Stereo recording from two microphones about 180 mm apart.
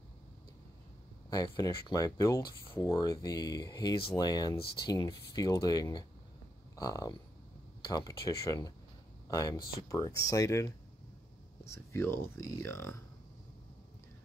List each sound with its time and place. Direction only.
1.3 s speech: 20° left (ahead or behind)
11.7 s speech: 15° left (ahead or behind)